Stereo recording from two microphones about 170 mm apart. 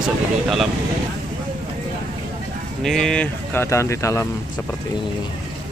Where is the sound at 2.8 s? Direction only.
Centre (ahead or behind); by 4.2 s 15° left (ahead or behind).